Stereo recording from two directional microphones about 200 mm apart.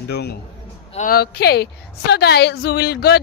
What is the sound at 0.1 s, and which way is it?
A woman's voice, 55° left (ahead or behind).